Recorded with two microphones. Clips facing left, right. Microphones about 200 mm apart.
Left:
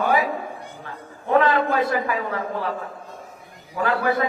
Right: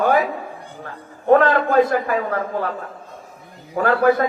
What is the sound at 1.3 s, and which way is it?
A man's voice, 45° right (ahead or behind).